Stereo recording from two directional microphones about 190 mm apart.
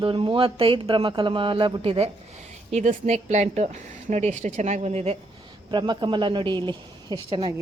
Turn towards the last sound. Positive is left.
turn(degrees=-25)  # may be behind; listen again after turning